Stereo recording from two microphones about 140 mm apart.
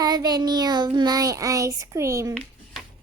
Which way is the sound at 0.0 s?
25° right (ahead or behind).